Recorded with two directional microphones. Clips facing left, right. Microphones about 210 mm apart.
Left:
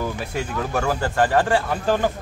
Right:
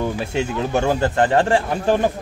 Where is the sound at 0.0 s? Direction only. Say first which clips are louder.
Right 4 dB; 25° right (ahead or behind).